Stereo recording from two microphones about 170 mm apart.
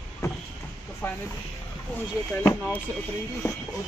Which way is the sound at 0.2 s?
20° left (ahead or behind).